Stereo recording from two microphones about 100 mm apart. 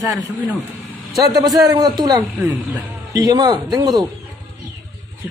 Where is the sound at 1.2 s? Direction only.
40° right (ahead or behind).